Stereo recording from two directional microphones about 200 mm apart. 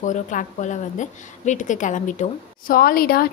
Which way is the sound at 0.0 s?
40° left (ahead or behind).